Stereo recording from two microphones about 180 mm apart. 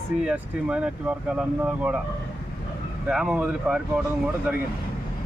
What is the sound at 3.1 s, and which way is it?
Speech, 5° right (ahead or behind).